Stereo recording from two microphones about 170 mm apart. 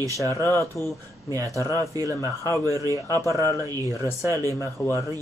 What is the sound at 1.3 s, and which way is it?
Speech, 20° right (ahead or behind).